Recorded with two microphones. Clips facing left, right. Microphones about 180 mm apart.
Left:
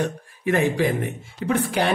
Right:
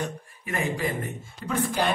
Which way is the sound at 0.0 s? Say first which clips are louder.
Left 8 dB; 80° left.